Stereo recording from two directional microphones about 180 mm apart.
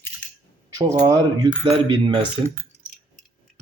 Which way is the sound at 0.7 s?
20° right (ahead or behind).